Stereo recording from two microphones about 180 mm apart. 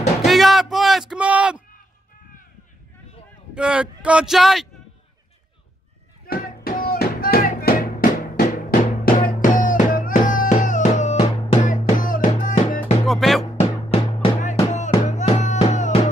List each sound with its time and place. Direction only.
0.2 s music: centre (ahead or behind)
3.5 s speech: 5° right (ahead or behind)
6.2 s music: 55° left (ahead or behind)
13.0 s music: centre (ahead or behind)
13.6 s music: 35° left (ahead or behind)